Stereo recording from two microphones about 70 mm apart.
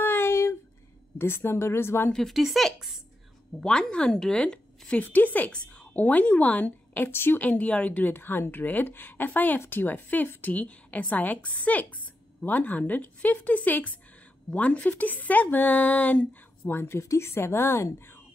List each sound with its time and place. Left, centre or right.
0.0 s a sound: left
1.1 s speech: left
2.1 s speech: centre
3.6 s speech: centre
5.0 s a woman's voice: left